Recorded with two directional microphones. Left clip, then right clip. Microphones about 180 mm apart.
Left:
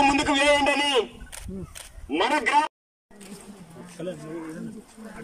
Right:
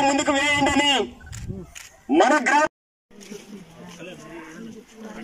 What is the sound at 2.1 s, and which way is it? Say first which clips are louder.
Speech: right 6 dB; 50° right (ahead or behind).